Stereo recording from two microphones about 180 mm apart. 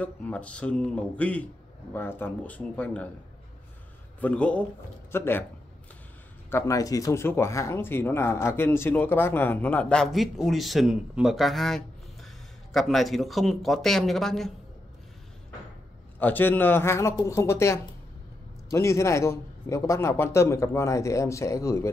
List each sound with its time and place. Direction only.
0.0 s speech: 5° left (ahead or behind)
4.2 s speech: 5° left (ahead or behind)
6.5 s speech: 20° left (ahead or behind); by 14.5 s centre (ahead or behind)
16.2 s speech: 10° left (ahead or behind)